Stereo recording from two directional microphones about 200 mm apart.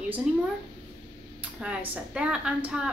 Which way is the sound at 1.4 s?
5° right (ahead or behind).